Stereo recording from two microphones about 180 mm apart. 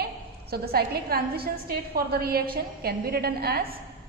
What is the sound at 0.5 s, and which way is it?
A woman's voice, 60° right (ahead or behind).